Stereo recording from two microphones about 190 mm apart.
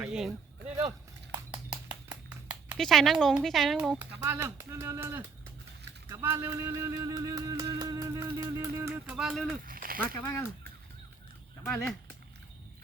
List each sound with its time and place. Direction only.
0.0 s a sound: 5° right (ahead or behind)
2.7 s speech: centre (ahead or behind)
4.2 s speech: 15° right (ahead or behind)
6.1 s music: 15° right (ahead or behind)
9.6 s a sound: 50° right (ahead or behind)
10.0 s speech: 15° left (ahead or behind)
11.6 s speech: 10° left (ahead or behind)